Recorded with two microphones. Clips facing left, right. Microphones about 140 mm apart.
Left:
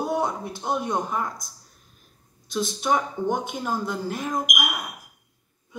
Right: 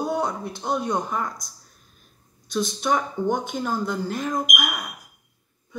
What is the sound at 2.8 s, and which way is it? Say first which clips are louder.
Speech: even; 15° left (ahead or behind).